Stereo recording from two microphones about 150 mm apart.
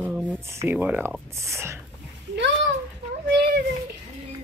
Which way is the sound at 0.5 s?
15° right (ahead or behind).